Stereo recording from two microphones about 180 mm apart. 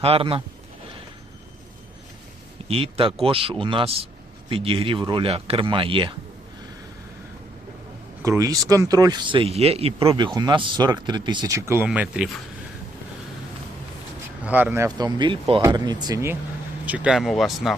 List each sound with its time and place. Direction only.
0.0 s speech: 30° right (ahead or behind)
2.6 s speech: 30° right (ahead or behind)
8.2 s speech: 15° right (ahead or behind)
14.4 s speech: 10° right (ahead or behind)